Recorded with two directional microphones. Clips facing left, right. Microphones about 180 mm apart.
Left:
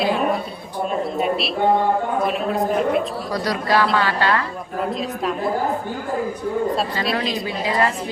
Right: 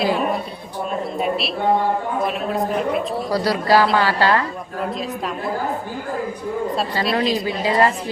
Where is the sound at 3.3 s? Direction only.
30° right (ahead or behind).